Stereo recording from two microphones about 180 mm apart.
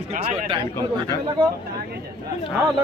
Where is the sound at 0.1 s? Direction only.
35° right (ahead or behind).